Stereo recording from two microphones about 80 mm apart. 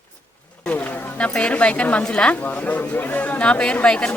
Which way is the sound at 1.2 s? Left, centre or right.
Centre.